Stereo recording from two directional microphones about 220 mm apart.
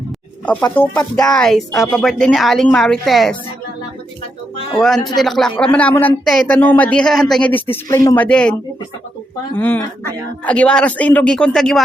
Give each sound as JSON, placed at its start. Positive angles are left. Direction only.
{"t": 0.6, "sound": "speech", "side_deg": 10}
{"t": 4.5, "sound": "a sound", "side_deg": 20}
{"t": 5.0, "sound": "speech", "side_deg": 0}
{"t": 9.6, "sound": "speech", "side_deg": 10}